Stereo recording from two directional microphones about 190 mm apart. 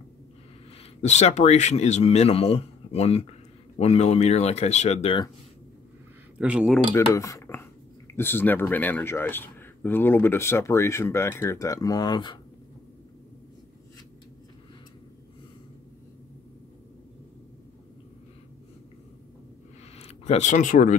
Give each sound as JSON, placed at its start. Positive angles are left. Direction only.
{"t": 1.0, "sound": "speech", "side_deg": 35}
{"t": 6.3, "sound": "speech", "side_deg": -5}
{"t": 6.9, "sound": "cutlery", "side_deg": 15}
{"t": 8.2, "sound": "speech", "side_deg": 10}
{"t": 20.0, "sound": "speech", "side_deg": 35}